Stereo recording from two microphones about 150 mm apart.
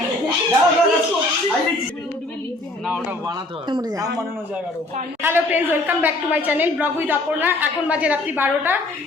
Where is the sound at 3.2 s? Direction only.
30° right (ahead or behind).